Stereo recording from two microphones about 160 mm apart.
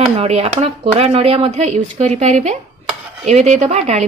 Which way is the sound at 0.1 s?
40° right (ahead or behind).